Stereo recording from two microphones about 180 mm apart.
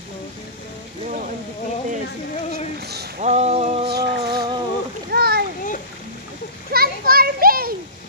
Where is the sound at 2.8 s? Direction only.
65° right (ahead or behind).